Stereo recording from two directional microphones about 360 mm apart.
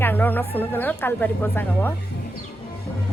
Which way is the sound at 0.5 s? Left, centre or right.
Centre.